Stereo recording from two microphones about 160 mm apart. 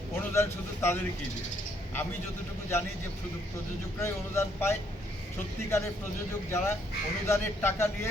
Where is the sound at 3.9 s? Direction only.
15° left (ahead or behind).